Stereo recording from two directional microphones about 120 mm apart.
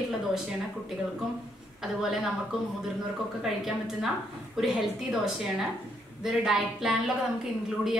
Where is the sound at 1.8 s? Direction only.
5° right (ahead or behind).